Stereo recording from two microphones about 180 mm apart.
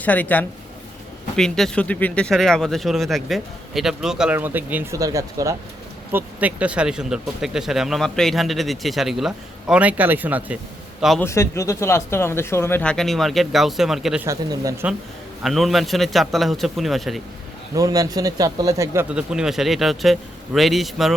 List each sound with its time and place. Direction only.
0.0 s speech: 10° left (ahead or behind); by 10.6 s 10° right (ahead or behind)
11.2 s speech: 15° left (ahead or behind); by 14.3 s 5° right (ahead or behind)
14.3 s speech: 20° right (ahead or behind)
15.4 s speech: centre (ahead or behind)
17.7 s speech: 20° right (ahead or behind)
19.0 s speech: 5° right (ahead or behind)